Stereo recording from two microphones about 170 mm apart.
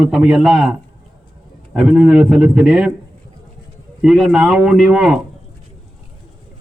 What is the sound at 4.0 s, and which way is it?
A man's voice, centre (ahead or behind).